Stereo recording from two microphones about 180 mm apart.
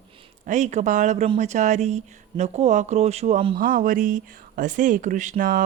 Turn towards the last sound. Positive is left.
turn(degrees=-50)  # may be behind; listen again after turning